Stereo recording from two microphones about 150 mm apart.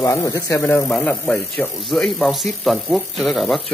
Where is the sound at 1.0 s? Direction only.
5° left (ahead or behind).